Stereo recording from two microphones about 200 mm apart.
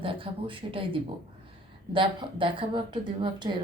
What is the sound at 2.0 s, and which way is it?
Speech, 25° right (ahead or behind).